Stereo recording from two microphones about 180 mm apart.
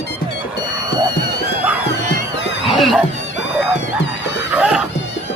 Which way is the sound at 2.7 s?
Centre (ahead or behind).